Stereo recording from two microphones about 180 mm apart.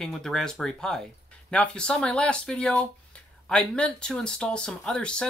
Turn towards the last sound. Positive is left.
turn(degrees=5)  # may be behind; listen again after turning